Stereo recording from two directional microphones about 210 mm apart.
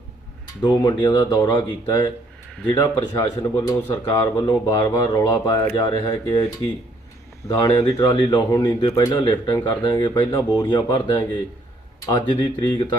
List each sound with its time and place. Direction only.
0.6 s speech: 20° left (ahead or behind)